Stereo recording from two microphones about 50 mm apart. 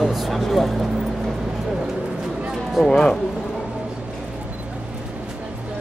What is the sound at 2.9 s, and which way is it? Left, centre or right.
Speech, centre.